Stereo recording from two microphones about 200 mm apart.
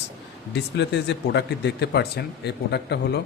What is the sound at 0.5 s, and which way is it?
A man's voice, 60° left (ahead or behind).